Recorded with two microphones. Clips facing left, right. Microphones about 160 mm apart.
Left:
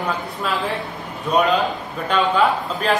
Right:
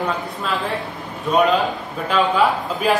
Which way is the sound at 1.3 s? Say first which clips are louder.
Right 1 dB; centre (ahead or behind).